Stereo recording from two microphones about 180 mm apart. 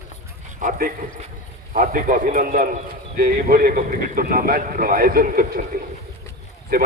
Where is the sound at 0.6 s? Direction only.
45° right (ahead or behind).